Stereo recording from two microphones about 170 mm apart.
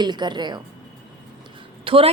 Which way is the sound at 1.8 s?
30° right (ahead or behind).